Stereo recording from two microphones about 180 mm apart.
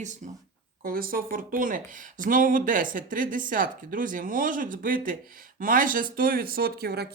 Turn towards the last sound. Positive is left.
turn(degrees=-60)  # may be behind; listen again after turning